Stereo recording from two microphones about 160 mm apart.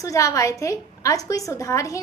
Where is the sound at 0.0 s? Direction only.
20° left (ahead or behind).